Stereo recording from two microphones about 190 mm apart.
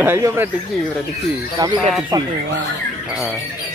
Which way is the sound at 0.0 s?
10° right (ahead or behind).